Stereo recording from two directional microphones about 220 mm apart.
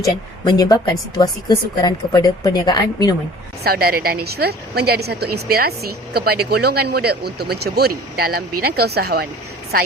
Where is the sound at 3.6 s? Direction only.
45° right (ahead or behind).